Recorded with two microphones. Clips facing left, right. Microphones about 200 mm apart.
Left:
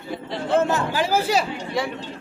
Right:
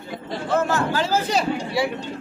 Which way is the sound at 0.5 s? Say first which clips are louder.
Left 1 dB; 25° left (ahead or behind).